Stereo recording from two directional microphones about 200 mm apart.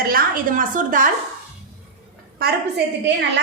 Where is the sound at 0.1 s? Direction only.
40° right (ahead or behind).